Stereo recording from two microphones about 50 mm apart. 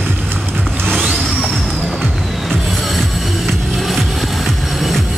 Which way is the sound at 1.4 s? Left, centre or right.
Centre.